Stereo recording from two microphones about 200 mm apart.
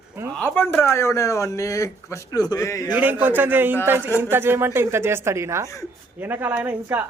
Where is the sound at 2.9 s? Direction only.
10° right (ahead or behind).